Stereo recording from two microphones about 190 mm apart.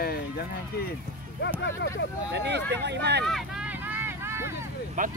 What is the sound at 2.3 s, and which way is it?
Speech, 65° right (ahead or behind).